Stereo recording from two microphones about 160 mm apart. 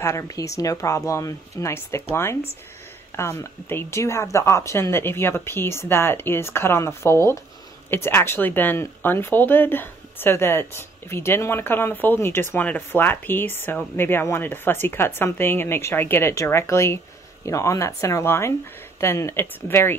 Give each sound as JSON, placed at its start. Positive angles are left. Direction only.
{"t": 0.0, "sound": "speech", "side_deg": 20}
{"t": 3.2, "sound": "speech", "side_deg": 15}